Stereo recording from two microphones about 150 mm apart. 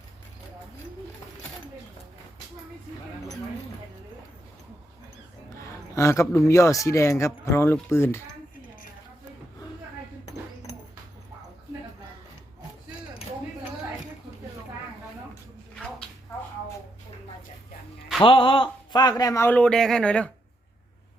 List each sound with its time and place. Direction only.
5.9 s a man's voice: 20° left (ahead or behind)
18.2 s a man's voice: 35° left (ahead or behind); by 20.3 s 5° left (ahead or behind)